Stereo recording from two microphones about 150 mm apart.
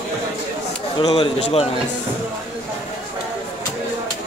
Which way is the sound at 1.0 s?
30° left (ahead or behind).